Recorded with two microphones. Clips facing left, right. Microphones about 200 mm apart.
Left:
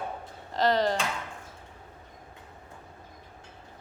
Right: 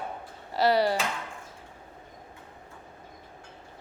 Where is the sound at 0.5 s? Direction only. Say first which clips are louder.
Right 1 dB; 10° right (ahead or behind).